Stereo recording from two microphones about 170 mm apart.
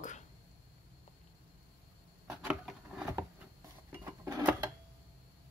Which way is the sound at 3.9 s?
20° right (ahead or behind).